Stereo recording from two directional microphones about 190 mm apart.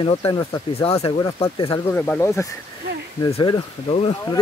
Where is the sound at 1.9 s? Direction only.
10° left (ahead or behind).